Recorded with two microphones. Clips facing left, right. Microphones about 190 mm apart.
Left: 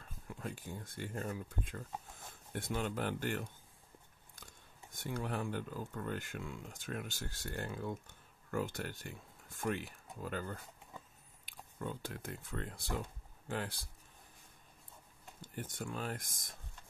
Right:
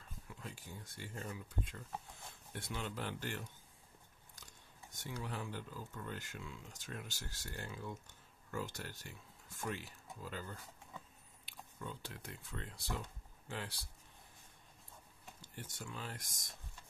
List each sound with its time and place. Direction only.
0.3 s speech: 50° left (ahead or behind)
15.4 s speech: 50° left (ahead or behind)